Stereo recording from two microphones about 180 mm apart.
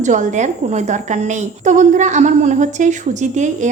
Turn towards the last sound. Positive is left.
turn(degrees=-40)  # may be behind; listen again after turning